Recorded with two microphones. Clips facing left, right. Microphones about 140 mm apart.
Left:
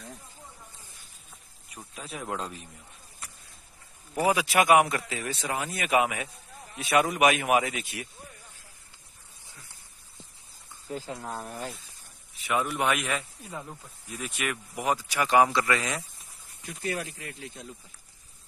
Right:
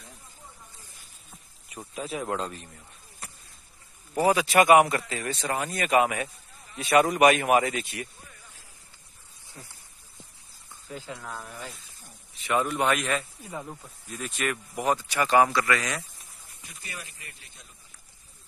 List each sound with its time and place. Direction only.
1.7 s a man's voice: 5° right (ahead or behind)
4.1 s a man's voice: 10° left (ahead or behind)
10.9 s speech: 35° left (ahead or behind)
12.4 s speech: 5° left (ahead or behind)
13.5 s speech: 10° right (ahead or behind)
14.1 s speech: 10° left (ahead or behind)
15.5 s speech: 25° left (ahead or behind)
16.7 s speech: 60° left (ahead or behind); by 17.6 s 90° left